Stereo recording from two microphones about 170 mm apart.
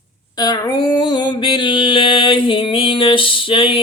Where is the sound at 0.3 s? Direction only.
20° left (ahead or behind).